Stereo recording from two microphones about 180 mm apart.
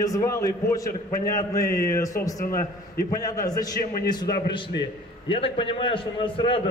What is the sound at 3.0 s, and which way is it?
Speech, 20° left (ahead or behind).